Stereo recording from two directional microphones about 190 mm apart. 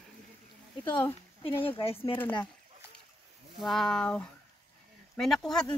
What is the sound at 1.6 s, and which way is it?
Speech, 30° left (ahead or behind).